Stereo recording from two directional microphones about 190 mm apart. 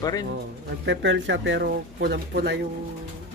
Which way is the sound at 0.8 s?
70° right (ahead or behind).